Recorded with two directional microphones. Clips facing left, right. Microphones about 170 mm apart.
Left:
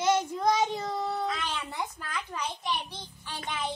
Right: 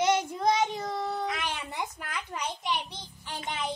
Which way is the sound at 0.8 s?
15° right (ahead or behind).